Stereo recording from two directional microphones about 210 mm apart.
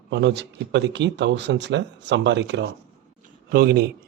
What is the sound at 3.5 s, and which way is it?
Speech, 45° right (ahead or behind).